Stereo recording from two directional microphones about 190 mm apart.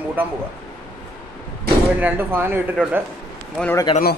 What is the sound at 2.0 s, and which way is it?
A man's voice, 10° right (ahead or behind).